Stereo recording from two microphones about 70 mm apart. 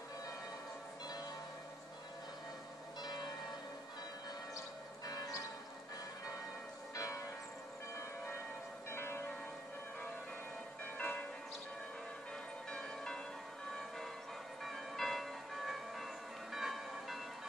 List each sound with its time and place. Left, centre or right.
3.0 s church bell: left
7.0 s church bell: left
8.9 s church bell: left
11.0 s church bell: centre
12.7 s church bell: centre
14.6 s church bell: centre